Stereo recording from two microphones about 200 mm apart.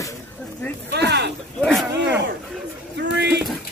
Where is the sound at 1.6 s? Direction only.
Centre (ahead or behind).